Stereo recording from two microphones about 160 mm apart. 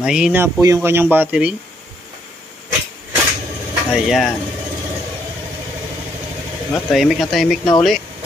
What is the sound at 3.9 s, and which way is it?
Speech, centre (ahead or behind).